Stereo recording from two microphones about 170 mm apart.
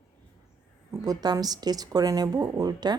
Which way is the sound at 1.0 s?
25° right (ahead or behind).